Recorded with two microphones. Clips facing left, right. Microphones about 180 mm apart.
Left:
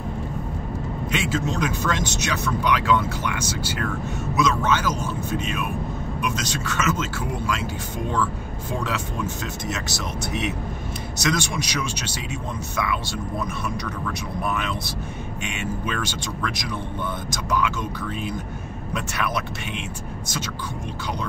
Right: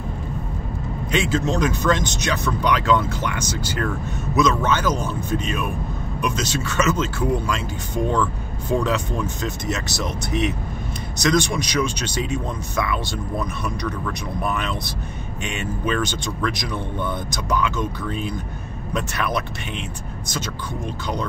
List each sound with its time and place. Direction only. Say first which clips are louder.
1.1 s speech: right 5 dB; 5° left (ahead or behind)
8.9 s speech: right 3 dB; 5° left (ahead or behind)
14.5 s speech: right 1 dB; 5° left (ahead or behind)
18.9 s speech: right 3 dB; 5° left (ahead or behind)